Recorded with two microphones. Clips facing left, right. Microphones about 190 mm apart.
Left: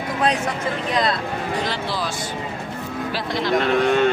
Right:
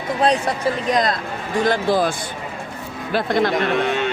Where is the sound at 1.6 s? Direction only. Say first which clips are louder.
Right 8 dB; 50° right (ahead or behind).